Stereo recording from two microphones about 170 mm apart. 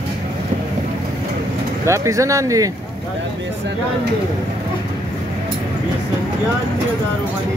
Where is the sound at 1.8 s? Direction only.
15° right (ahead or behind).